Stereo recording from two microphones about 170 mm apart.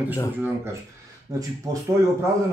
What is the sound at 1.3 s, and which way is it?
Speech, 20° right (ahead or behind).